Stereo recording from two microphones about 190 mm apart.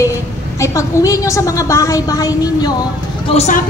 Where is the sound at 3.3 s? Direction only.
35° left (ahead or behind).